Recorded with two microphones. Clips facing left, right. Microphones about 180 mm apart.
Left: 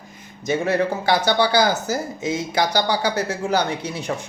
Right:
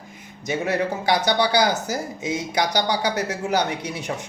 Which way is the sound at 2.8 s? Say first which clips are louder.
Left 2 dB; 20° right (ahead or behind).